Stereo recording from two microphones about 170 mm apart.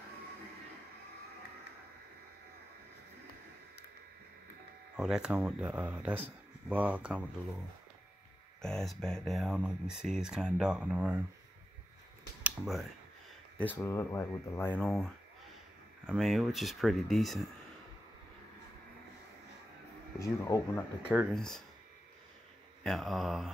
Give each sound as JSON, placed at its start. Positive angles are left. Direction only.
{"t": 4.9, "sound": "speech", "side_deg": 0}
{"t": 8.6, "sound": "speech", "side_deg": 5}
{"t": 12.4, "sound": "speech", "side_deg": 0}
{"t": 13.6, "sound": "speech", "side_deg": 15}
{"t": 20.2, "sound": "speech", "side_deg": 20}
{"t": 21.1, "sound": "speech", "side_deg": -5}
{"t": 22.8, "sound": "speech", "side_deg": 0}